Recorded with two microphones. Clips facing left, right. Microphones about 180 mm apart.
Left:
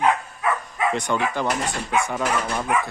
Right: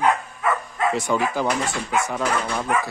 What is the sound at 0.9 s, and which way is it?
Speech, 5° right (ahead or behind).